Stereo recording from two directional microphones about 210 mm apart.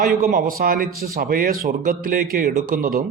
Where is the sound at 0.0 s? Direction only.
45° right (ahead or behind).